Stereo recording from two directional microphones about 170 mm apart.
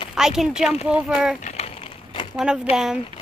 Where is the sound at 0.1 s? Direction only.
5° right (ahead or behind).